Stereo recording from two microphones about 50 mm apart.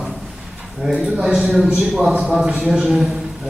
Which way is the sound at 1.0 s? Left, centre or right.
Centre.